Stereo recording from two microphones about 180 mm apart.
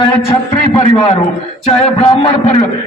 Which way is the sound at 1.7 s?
35° left (ahead or behind).